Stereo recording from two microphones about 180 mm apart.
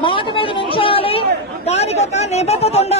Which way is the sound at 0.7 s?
30° left (ahead or behind).